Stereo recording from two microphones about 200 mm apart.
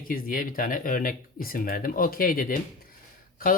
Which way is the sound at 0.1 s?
45° left (ahead or behind).